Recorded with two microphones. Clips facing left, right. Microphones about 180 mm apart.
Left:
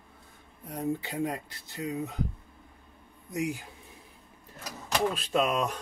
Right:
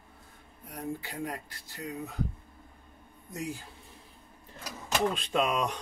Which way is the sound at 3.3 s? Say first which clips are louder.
Left 5 dB; 15° left (ahead or behind).